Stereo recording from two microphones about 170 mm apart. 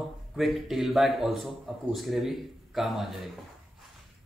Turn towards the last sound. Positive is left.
turn(degrees=0)  # may be behind; listen again after turning